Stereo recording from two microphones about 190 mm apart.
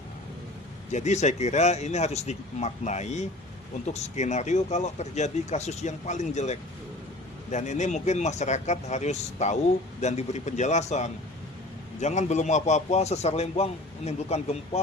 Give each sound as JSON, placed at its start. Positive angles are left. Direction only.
{"t": 0.9, "sound": "a man's voice", "side_deg": 35}